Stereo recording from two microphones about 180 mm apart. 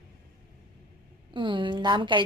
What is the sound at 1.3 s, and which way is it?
Speech, 25° right (ahead or behind).